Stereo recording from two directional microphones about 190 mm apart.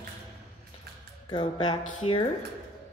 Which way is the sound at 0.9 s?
55° right (ahead or behind).